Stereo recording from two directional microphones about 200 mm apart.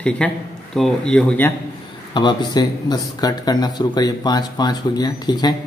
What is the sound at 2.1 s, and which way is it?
Speech, 20° left (ahead or behind).